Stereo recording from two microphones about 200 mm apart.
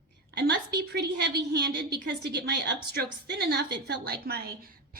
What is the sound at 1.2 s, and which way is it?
A woman's voice, 55° right (ahead or behind).